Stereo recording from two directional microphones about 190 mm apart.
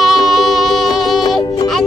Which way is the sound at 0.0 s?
Centre (ahead or behind).